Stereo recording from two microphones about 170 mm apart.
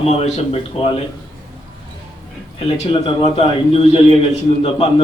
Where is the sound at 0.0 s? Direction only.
40° left (ahead or behind).